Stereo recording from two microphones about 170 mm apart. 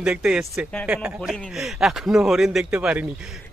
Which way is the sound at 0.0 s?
5° right (ahead or behind).